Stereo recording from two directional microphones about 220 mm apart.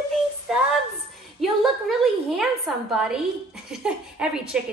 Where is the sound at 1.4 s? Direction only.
Centre (ahead or behind).